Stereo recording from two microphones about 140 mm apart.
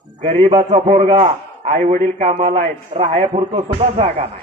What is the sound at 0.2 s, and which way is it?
A man's voice, 55° right (ahead or behind).